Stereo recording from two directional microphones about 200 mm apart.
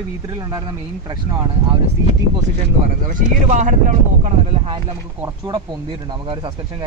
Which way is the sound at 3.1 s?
40° right (ahead or behind).